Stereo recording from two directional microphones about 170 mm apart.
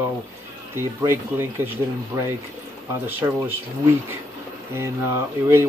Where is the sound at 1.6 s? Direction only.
10° right (ahead or behind).